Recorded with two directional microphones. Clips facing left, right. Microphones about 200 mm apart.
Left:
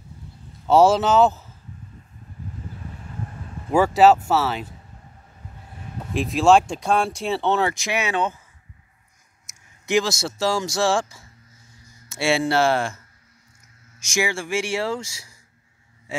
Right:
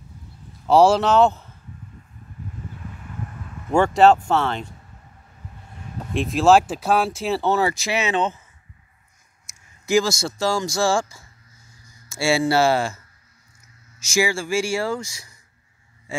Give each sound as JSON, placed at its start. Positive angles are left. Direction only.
{"t": 0.7, "sound": "speech", "side_deg": 0}
{"t": 3.7, "sound": "speech", "side_deg": 5}
{"t": 6.1, "sound": "speech", "side_deg": 0}
{"t": 7.7, "sound": "speech", "side_deg": 15}
{"t": 9.5, "sound": "a sound", "side_deg": 15}
{"t": 9.8, "sound": "speech", "side_deg": 0}
{"t": 14.0, "sound": "speech", "side_deg": 0}
{"t": 15.0, "sound": "speech", "side_deg": 25}